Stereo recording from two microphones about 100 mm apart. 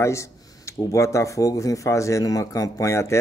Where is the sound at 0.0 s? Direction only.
30° left (ahead or behind).